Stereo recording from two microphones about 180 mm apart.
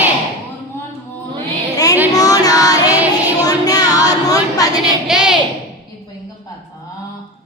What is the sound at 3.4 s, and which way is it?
Music, 20° left (ahead or behind).